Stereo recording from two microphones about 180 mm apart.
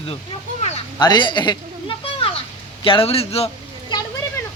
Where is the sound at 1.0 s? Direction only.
25° left (ahead or behind).